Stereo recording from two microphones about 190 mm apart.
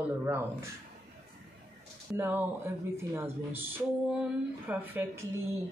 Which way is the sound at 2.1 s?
10° right (ahead or behind).